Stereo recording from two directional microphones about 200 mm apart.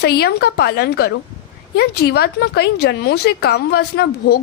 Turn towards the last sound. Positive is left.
turn(degrees=55)  # may be behind; listen again after turning